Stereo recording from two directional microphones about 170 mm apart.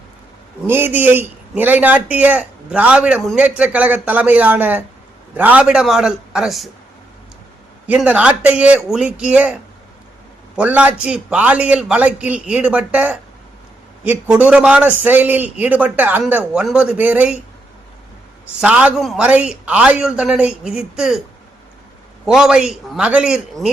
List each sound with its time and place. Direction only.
0.7 s a man's voice: 10° right (ahead or behind)
7.9 s a man's voice: 10° right (ahead or behind)
18.6 s a man's voice: 5° right (ahead or behind)
22.3 s a man's voice: 5° right (ahead or behind)